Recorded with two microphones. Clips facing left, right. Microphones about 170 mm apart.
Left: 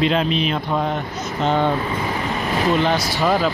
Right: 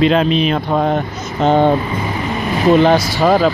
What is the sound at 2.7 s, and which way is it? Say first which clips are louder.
Speech: right 10 dB; 55° right (ahead or behind).